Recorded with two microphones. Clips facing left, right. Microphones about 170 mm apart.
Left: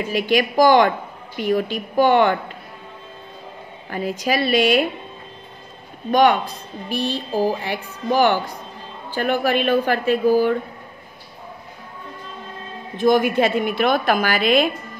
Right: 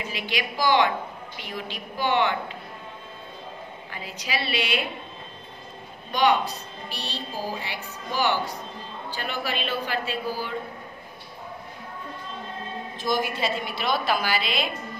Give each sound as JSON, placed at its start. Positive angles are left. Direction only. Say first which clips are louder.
{"t": 0.0, "sound": "a woman's voice", "louder": "left 11 dB", "side_deg": 45}
{"t": 3.9, "sound": "a woman's voice", "louder": "left 11 dB", "side_deg": 50}
{"t": 6.9, "sound": "a woman's voice", "louder": "left 12 dB", "side_deg": 50}
{"t": 12.9, "sound": "a woman's voice", "louder": "left 11 dB", "side_deg": 55}